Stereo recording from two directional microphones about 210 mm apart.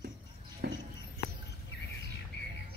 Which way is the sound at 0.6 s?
55° right (ahead or behind).